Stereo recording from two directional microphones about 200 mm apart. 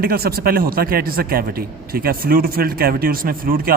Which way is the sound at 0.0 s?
50° right (ahead or behind).